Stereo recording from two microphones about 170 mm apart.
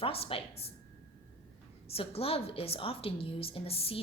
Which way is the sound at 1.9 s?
35° left (ahead or behind).